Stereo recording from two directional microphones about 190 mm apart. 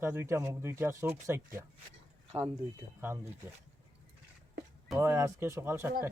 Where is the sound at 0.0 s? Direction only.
15° right (ahead or behind).